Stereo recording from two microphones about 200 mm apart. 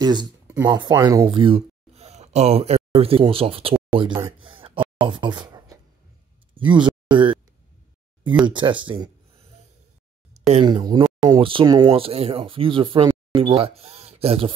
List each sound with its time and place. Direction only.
0.0 s speech: 20° right (ahead or behind)
8.5 s speech: 25° right (ahead or behind)
10.6 s speech: 20° right (ahead or behind)
11.9 s speech: 30° right (ahead or behind)